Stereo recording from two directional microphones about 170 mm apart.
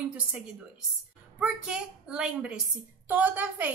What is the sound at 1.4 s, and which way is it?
A woman's voice, 5° right (ahead or behind).